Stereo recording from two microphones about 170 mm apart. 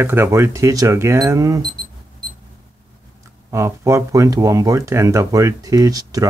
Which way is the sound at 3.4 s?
15° right (ahead or behind).